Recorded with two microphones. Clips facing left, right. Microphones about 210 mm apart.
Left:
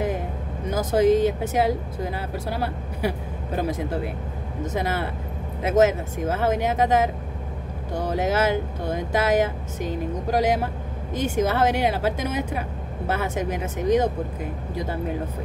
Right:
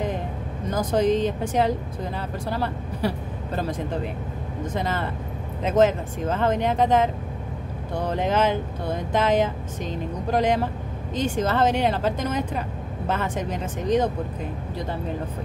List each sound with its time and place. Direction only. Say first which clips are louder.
0.7 s speech: left 2 dB; 5° left (ahead or behind)